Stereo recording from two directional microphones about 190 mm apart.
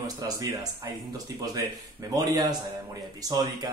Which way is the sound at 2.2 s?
20° right (ahead or behind).